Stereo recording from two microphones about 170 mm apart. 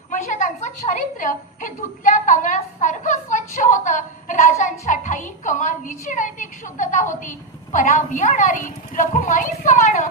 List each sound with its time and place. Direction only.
0.1 s a woman's voice: 45° left (ahead or behind)